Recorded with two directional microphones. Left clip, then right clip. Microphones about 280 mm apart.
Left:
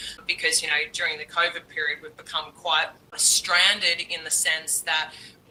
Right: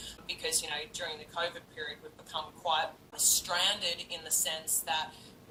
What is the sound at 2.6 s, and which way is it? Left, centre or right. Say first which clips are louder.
A woman's voice: left 7 dB; left.